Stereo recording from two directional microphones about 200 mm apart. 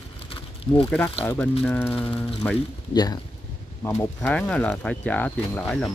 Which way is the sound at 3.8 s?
10° left (ahead or behind).